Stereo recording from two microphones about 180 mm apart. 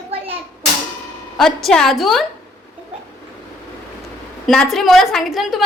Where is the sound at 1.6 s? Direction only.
Centre (ahead or behind).